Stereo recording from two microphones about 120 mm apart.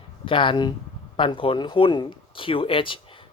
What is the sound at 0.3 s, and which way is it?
Speech, 45° left (ahead or behind).